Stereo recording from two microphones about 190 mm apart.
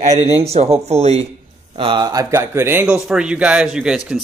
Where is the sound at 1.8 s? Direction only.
25° right (ahead or behind); by 4.0 s 5° right (ahead or behind).